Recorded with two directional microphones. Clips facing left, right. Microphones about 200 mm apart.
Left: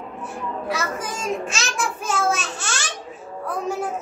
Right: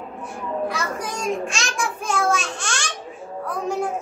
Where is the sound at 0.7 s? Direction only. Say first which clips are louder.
Even; 5° left (ahead or behind).